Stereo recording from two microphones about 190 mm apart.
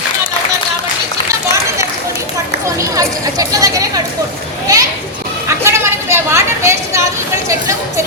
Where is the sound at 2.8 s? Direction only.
20° right (ahead or behind).